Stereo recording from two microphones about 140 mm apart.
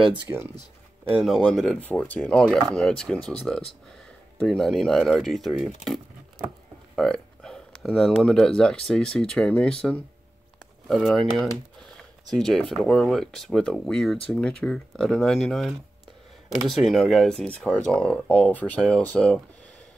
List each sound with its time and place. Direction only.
0.1 s speech: 15° right (ahead or behind)
1.1 s speech: centre (ahead or behind)
7.0 s speech: 5° left (ahead or behind)